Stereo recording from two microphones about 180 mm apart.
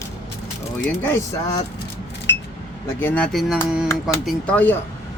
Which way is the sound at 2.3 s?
75° left (ahead or behind).